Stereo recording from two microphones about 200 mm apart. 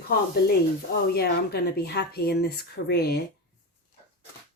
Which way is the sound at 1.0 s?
50° left (ahead or behind).